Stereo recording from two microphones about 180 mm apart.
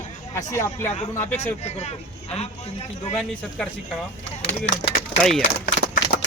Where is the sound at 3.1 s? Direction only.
5° left (ahead or behind).